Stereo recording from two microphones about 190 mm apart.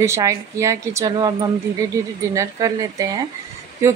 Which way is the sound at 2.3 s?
15° right (ahead or behind).